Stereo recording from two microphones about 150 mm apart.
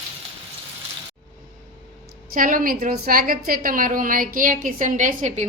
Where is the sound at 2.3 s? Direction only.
65° right (ahead or behind).